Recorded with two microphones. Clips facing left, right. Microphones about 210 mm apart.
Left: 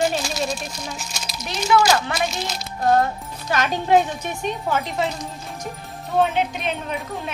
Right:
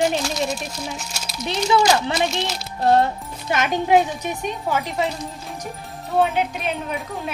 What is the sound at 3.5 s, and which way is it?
A woman's voice, 20° right (ahead or behind).